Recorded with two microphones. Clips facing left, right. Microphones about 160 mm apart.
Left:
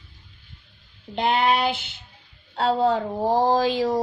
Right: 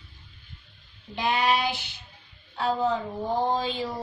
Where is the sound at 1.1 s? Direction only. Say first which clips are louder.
Left 4 dB; 60° left (ahead or behind).